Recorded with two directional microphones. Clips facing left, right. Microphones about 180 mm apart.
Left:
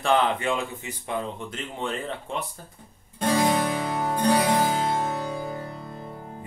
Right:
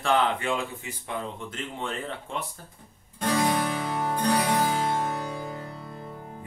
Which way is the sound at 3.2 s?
25° left (ahead or behind).